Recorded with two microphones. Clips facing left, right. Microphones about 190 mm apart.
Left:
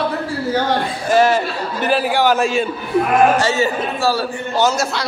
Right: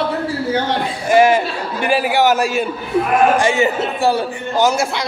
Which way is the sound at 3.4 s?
15° right (ahead or behind).